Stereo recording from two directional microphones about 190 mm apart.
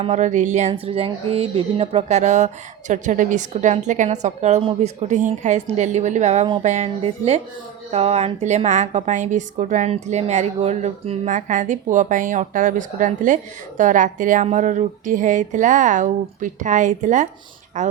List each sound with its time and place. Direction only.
0.0 s speech: 40° right (ahead or behind)